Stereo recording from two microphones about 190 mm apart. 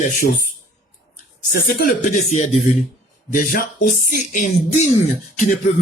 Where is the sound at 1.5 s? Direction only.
45° left (ahead or behind).